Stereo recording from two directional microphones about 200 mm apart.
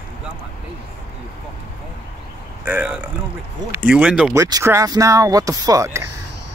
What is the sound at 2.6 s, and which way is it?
A man's voice, 10° right (ahead or behind).